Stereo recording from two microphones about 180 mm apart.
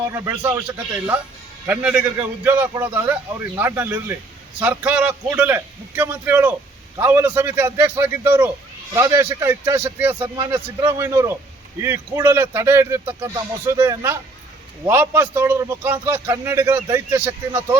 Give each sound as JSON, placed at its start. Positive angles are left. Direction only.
{"t": 0.1, "sound": "a man's voice", "side_deg": -15}
{"t": 1.6, "sound": "a man's voice", "side_deg": -10}